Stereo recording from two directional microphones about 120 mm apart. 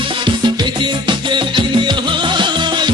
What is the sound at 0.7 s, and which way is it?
Music, 40° right (ahead or behind).